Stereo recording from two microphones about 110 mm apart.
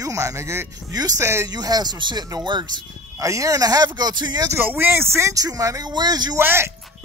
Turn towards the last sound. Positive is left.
turn(degrees=-20)  # may be behind; listen again after turning